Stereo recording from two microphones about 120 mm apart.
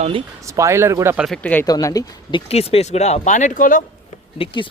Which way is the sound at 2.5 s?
60° left (ahead or behind).